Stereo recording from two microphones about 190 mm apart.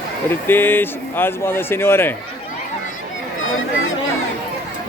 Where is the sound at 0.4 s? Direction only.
10° left (ahead or behind).